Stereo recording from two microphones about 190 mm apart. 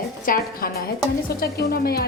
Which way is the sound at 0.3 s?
50° left (ahead or behind).